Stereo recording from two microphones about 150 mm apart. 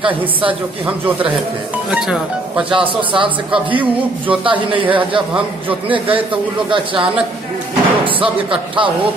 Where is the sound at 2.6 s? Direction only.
35° right (ahead or behind).